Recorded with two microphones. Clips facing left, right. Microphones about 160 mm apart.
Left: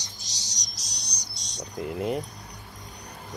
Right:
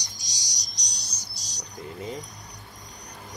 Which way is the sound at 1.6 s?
65° left (ahead or behind).